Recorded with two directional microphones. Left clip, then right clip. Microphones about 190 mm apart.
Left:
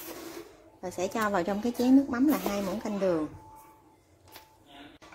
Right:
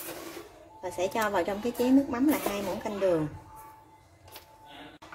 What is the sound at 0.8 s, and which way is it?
A woman's voice, 30° left (ahead or behind).